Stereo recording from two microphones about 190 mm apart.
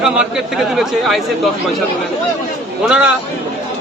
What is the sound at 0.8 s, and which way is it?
Speech, centre (ahead or behind).